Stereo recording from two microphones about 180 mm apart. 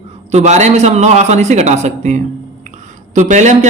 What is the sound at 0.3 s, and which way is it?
A man's voice, 40° right (ahead or behind).